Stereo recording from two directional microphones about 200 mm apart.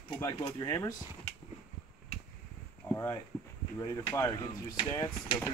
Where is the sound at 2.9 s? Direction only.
10° left (ahead or behind).